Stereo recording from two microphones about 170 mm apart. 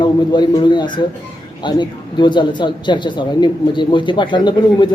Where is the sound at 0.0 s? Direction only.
25° left (ahead or behind).